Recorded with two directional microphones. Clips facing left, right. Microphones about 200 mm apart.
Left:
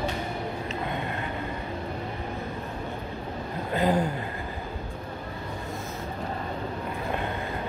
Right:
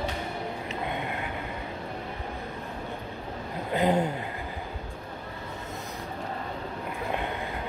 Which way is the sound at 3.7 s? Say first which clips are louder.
Even; 20° right (ahead or behind).